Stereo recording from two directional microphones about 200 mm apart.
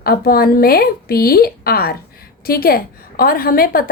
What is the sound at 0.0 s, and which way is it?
A woman's voice, 50° left (ahead or behind).